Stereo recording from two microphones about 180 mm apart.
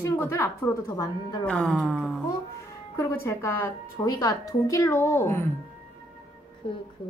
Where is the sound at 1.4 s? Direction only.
5° left (ahead or behind).